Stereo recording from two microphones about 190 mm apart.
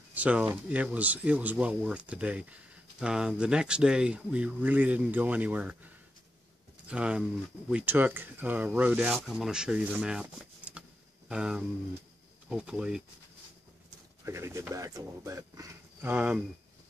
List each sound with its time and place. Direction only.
0.1 s speech: 5° right (ahead or behind)
6.9 s speech: 5° right (ahead or behind)
11.2 s a sound: 5° right (ahead or behind)
12.4 s speech: 5° right (ahead or behind)
14.2 s speech: 15° right (ahead or behind)